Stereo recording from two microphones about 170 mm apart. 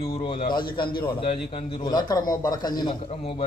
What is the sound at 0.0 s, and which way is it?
Speech, 35° left (ahead or behind).